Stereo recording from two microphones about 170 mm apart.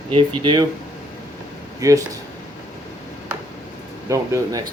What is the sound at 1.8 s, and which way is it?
Speech, 20° right (ahead or behind).